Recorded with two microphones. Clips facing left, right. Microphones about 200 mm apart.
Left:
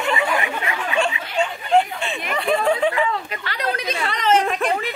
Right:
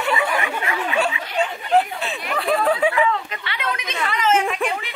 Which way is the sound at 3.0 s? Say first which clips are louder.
Right 2 dB; 35° left (ahead or behind).